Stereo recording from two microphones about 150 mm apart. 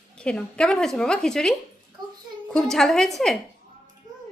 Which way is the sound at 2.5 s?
5° left (ahead or behind).